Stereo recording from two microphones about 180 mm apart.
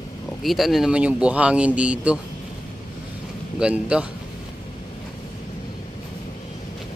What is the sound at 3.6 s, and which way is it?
Speech, 5° right (ahead or behind).